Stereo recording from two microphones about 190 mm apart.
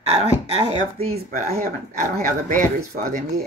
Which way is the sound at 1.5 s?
45° right (ahead or behind).